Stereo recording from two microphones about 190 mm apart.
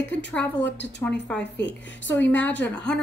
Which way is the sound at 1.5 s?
65° left (ahead or behind).